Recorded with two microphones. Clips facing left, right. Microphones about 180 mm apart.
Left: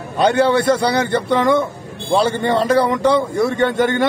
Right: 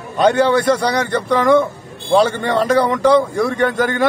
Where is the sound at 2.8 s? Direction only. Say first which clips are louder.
Right 2 dB; centre (ahead or behind).